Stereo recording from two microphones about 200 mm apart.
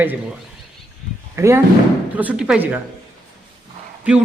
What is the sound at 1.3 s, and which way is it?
Speech, 15° right (ahead or behind).